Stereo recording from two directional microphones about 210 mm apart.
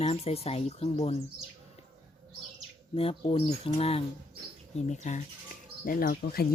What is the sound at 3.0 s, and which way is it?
Speech, 25° left (ahead or behind).